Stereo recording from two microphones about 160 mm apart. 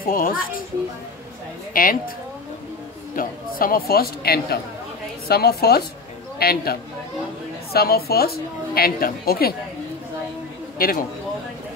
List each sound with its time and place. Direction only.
0.0 s a child's voice: 60° left (ahead or behind)
1.7 s a woman's voice: 60° left (ahead or behind)
3.2 s a man's voice: 65° left (ahead or behind)
10.8 s a child's voice: 60° left (ahead or behind)